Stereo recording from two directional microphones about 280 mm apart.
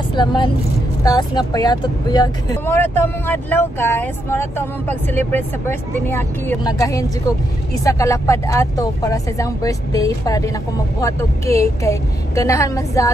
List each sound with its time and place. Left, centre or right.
0.1 s speech: centre